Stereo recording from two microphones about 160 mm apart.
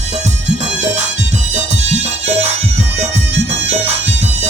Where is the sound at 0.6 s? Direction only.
45° right (ahead or behind).